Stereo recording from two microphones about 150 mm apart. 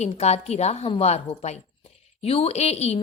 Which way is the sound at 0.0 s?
45° left (ahead or behind).